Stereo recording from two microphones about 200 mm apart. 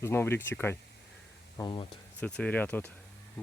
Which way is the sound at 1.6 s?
25° left (ahead or behind).